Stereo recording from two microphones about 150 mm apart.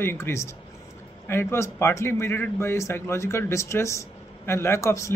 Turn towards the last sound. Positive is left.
turn(degrees=20)  # may be behind; listen again after turning